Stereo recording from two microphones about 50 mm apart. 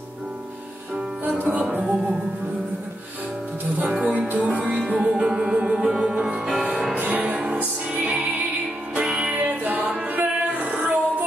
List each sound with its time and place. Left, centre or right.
1.4 s music: right
3.9 s music: right
7.0 s music: right
9.0 s music: centre
9.3 s music: right